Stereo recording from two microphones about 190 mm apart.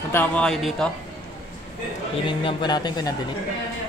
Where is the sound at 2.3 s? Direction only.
25° left (ahead or behind).